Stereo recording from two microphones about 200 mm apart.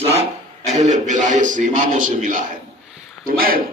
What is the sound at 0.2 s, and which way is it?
Speech, 35° right (ahead or behind).